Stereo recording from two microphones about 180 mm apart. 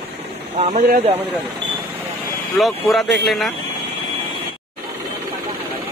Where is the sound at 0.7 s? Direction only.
55° right (ahead or behind).